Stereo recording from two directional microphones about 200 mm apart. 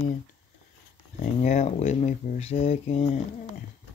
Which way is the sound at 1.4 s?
35° left (ahead or behind).